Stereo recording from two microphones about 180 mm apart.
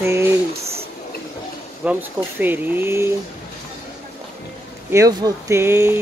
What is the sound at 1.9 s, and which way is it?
Speech, 10° right (ahead or behind).